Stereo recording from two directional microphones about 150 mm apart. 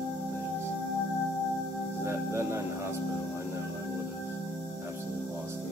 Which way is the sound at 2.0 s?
15° right (ahead or behind).